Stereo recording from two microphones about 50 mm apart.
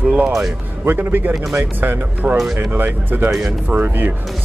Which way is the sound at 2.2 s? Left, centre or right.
Right.